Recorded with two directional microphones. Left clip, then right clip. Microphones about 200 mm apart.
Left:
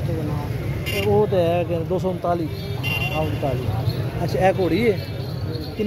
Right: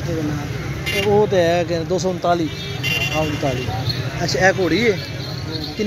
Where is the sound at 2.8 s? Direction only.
50° left (ahead or behind).